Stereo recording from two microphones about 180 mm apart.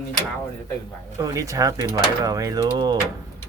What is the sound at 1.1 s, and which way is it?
Speech, 20° right (ahead or behind).